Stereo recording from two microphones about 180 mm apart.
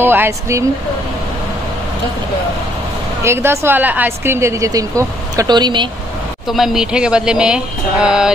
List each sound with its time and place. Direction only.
0.0 s a woman's voice: 10° right (ahead or behind)
3.3 s a woman's voice: 15° right (ahead or behind)
6.4 s speech: centre (ahead or behind)